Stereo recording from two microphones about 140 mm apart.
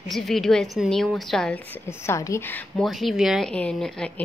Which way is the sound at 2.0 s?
20° left (ahead or behind).